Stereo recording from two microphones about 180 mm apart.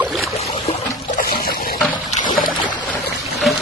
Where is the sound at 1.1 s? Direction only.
55° left (ahead or behind).